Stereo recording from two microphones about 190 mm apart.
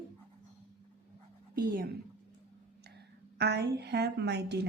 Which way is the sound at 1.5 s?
55° right (ahead or behind).